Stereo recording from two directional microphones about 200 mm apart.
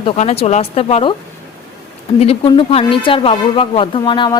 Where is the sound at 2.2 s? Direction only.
30° left (ahead or behind).